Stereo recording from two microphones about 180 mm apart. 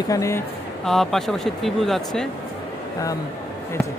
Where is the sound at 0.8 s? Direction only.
Centre (ahead or behind).